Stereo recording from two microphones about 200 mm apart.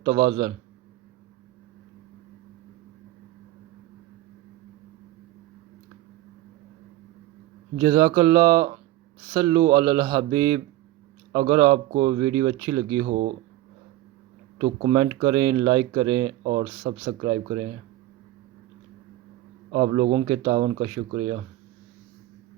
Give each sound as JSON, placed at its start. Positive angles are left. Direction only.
{"t": 0.3, "sound": "speech", "side_deg": -25}
{"t": 7.8, "sound": "speech", "side_deg": -20}
{"t": 11.3, "sound": "speech", "side_deg": -30}
{"t": 14.6, "sound": "speech", "side_deg": -30}
{"t": 16.4, "sound": "speech", "side_deg": -35}
{"t": 19.7, "sound": "speech", "side_deg": -35}